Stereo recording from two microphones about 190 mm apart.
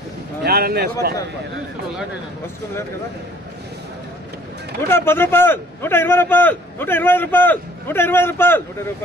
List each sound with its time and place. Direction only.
0.4 s speech: 55° right (ahead or behind)
4.8 s a man's voice: 10° left (ahead or behind)